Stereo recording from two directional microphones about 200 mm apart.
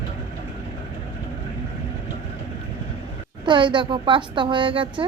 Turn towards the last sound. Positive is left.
turn(degrees=-25)  # may be behind; listen again after turning